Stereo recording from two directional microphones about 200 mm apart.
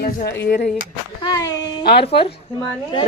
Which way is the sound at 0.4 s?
50° left (ahead or behind).